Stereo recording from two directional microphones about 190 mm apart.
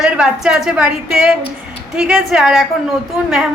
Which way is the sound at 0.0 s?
5° right (ahead or behind).